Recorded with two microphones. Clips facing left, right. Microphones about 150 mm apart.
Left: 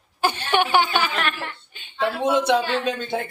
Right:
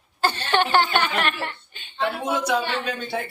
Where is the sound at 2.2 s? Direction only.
25° left (ahead or behind).